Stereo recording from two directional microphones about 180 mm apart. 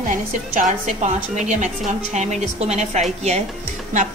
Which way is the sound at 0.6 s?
45° right (ahead or behind).